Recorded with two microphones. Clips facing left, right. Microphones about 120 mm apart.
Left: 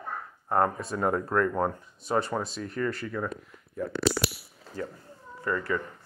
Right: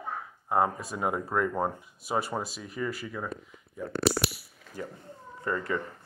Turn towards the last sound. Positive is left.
turn(degrees=-25)  # may be behind; listen again after turning